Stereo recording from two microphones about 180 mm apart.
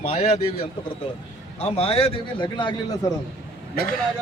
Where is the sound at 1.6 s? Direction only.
35° left (ahead or behind).